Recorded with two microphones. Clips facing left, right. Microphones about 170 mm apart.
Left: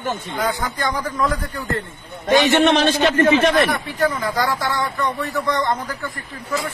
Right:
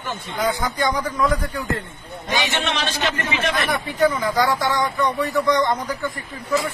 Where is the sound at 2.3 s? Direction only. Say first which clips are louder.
Left 10 dB; 50° left (ahead or behind).